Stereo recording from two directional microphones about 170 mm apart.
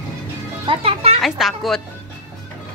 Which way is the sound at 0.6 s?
30° right (ahead or behind).